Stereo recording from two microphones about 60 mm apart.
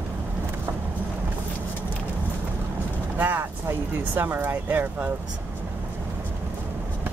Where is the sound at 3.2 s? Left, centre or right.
Right.